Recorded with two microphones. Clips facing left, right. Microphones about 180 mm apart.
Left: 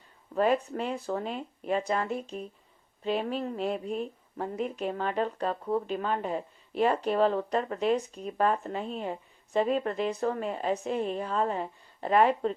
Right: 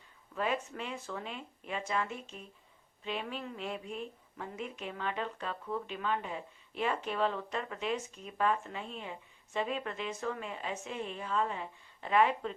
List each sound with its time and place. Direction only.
0.3 s speech: 40° left (ahead or behind)